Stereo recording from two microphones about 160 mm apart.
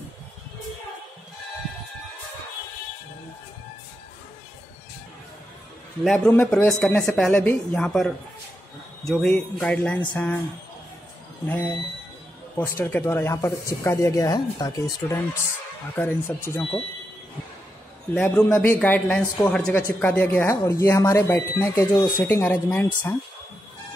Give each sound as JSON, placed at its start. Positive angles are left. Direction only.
{"t": 6.0, "sound": "speech", "side_deg": 5}
{"t": 11.4, "sound": "speech", "side_deg": 10}
{"t": 18.1, "sound": "speech", "side_deg": 10}